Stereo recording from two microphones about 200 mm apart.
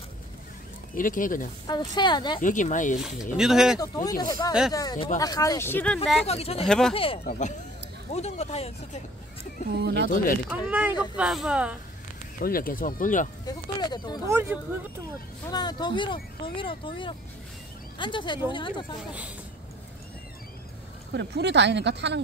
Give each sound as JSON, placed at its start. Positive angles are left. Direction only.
{"t": 0.9, "sound": "speech", "side_deg": 40}
{"t": 1.7, "sound": "speech", "side_deg": 20}
{"t": 2.4, "sound": "speech", "side_deg": 40}
{"t": 3.3, "sound": "speech", "side_deg": -5}
{"t": 3.8, "sound": "speech", "side_deg": 15}
{"t": 6.2, "sound": "speech", "side_deg": 30}
{"t": 9.7, "sound": "speech", "side_deg": -55}
{"t": 10.7, "sound": "speech", "side_deg": -5}
{"t": 12.4, "sound": "speech", "side_deg": 45}
{"t": 13.5, "sound": "speech", "side_deg": 20}
{"t": 14.2, "sound": "speech", "side_deg": -10}
{"t": 15.5, "sound": "speech", "side_deg": 20}
{"t": 21.1, "sound": "speech", "side_deg": -60}